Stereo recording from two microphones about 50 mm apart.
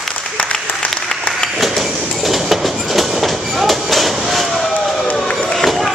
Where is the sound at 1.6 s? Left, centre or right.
Centre.